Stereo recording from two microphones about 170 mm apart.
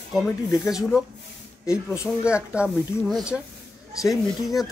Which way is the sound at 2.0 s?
5° right (ahead or behind).